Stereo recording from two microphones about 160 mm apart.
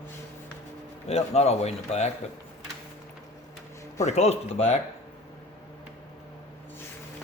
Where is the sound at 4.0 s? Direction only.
45° left (ahead or behind).